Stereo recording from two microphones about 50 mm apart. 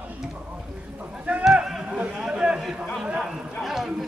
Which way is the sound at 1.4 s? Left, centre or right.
Centre.